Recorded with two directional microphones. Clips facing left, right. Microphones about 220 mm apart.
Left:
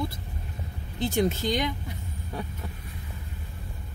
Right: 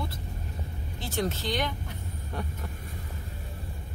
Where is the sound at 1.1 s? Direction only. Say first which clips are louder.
Left 4 dB; 15° left (ahead or behind).